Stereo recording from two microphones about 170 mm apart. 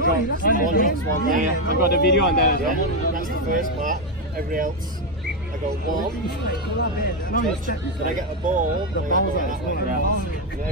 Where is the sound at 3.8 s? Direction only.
55° right (ahead or behind).